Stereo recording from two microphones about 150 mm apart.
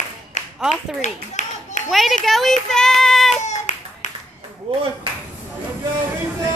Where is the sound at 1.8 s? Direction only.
Centre (ahead or behind).